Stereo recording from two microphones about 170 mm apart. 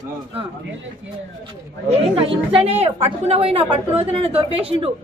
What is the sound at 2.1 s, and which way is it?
A woman's voice, 30° right (ahead or behind).